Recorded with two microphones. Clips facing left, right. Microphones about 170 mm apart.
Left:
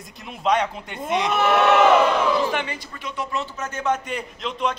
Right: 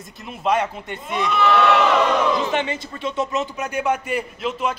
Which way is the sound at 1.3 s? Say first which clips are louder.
Right 2 dB; 50° left (ahead or behind).